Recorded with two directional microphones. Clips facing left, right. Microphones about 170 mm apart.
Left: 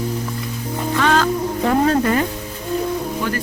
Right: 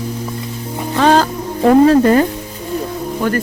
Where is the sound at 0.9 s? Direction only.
35° right (ahead or behind).